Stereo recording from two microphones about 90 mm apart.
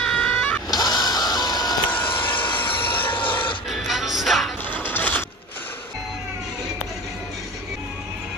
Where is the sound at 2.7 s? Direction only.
75° left (ahead or behind).